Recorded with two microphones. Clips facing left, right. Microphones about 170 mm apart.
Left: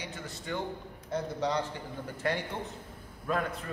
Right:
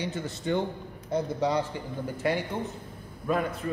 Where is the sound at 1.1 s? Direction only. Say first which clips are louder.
Right 4 dB; 10° right (ahead or behind).